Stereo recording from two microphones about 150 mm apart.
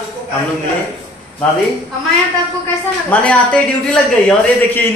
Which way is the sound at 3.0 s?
10° left (ahead or behind).